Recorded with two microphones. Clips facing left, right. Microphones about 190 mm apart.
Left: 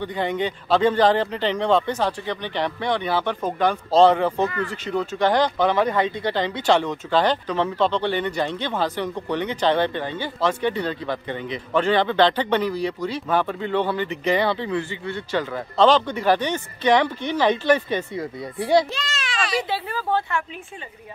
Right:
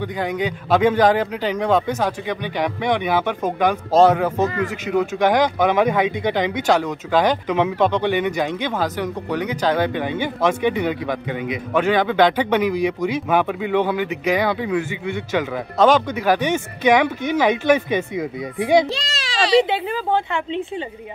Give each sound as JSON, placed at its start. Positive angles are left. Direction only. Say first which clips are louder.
{"t": 0.0, "sound": "speech", "louder": "right 1 dB", "side_deg": -10}
{"t": 18.9, "sound": "a sound", "louder": "right 3 dB", "side_deg": -35}
{"t": 19.6, "sound": "speech", "louder": "right 5 dB", "side_deg": -20}